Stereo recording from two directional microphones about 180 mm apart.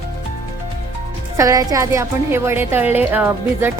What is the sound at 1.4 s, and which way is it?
A woman's voice, 20° right (ahead or behind).